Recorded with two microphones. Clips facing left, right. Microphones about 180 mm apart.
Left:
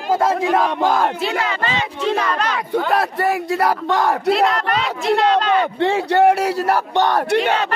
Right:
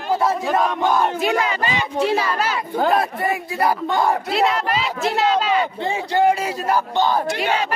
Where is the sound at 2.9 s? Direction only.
75° left (ahead or behind).